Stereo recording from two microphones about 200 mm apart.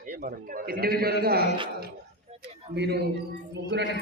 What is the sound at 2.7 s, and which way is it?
Speech, 55° right (ahead or behind).